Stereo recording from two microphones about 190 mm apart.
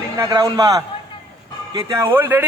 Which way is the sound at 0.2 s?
15° right (ahead or behind).